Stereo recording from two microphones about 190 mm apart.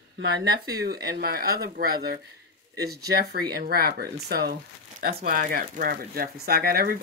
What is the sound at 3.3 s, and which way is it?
Speech, 55° right (ahead or behind).